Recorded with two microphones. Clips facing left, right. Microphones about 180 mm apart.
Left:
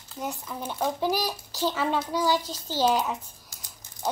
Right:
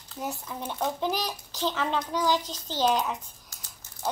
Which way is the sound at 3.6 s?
15° left (ahead or behind).